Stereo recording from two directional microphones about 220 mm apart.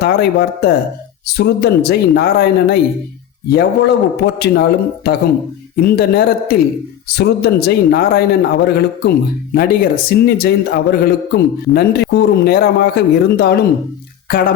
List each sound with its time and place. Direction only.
0.0 s a man's voice: 45° left (ahead or behind)